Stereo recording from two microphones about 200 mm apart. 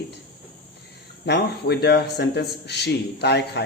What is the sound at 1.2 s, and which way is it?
A man's voice, 55° left (ahead or behind).